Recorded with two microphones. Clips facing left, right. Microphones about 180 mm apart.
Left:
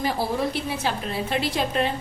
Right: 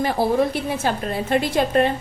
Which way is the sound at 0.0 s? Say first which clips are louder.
Right 6 dB; 50° right (ahead or behind).